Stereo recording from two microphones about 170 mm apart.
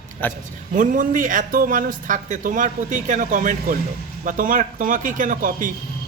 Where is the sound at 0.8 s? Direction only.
50° right (ahead or behind).